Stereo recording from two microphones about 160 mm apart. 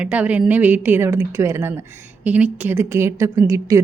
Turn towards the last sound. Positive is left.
turn(degrees=-15)  # may be behind; listen again after turning